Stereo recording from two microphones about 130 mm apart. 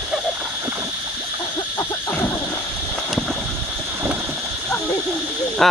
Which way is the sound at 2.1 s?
15° left (ahead or behind).